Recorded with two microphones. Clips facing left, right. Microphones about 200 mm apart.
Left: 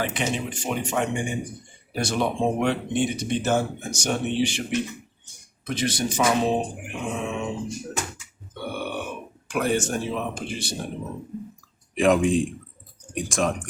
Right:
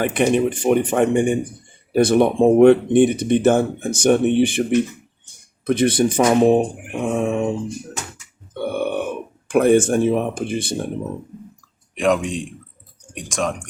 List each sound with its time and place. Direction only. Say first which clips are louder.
0.0 s speech: right 10 dB; 55° right (ahead or behind)
8.5 s burping: right 8 dB; 55° right (ahead or behind)
9.5 s speech: right 10 dB; 55° right (ahead or behind)
11.9 s a man's voice: even; centre (ahead or behind)